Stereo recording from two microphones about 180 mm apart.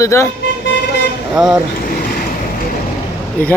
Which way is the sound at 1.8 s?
55° left (ahead or behind).